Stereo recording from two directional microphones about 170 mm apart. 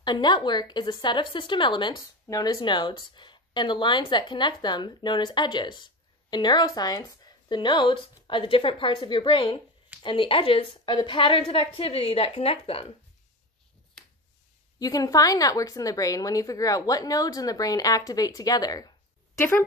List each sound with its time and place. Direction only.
0.0 s a woman's voice: 25° left (ahead or behind)
14.8 s speech: 20° left (ahead or behind)